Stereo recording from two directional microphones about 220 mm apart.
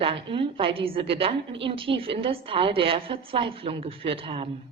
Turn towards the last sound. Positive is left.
turn(degrees=-25)  # may be behind; listen again after turning